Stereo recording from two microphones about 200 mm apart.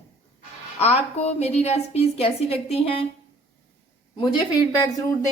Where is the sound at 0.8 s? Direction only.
30° left (ahead or behind).